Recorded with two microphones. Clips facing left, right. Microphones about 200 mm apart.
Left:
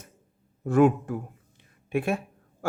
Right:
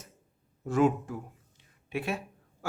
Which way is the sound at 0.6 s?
55° left (ahead or behind).